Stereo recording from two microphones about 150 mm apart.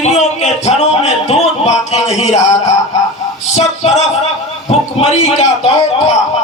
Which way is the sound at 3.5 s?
45° left (ahead or behind).